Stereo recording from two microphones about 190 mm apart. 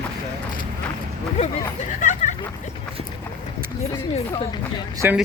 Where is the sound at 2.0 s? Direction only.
40° left (ahead or behind).